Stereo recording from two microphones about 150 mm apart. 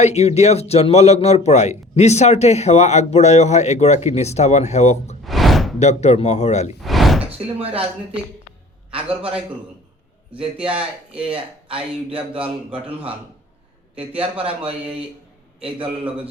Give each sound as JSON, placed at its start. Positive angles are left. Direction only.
{"t": 0.0, "sound": "a man's voice", "side_deg": 45}
{"t": 5.2, "sound": "slam", "side_deg": 0}
{"t": 5.8, "sound": "a man's voice", "side_deg": 45}
{"t": 6.8, "sound": "door", "side_deg": 0}
{"t": 7.3, "sound": "speech", "side_deg": -40}
{"t": 8.9, "sound": "a man's voice", "side_deg": -40}
{"t": 10.3, "sound": "speech", "side_deg": -35}
{"t": 14.4, "sound": "speech", "side_deg": -40}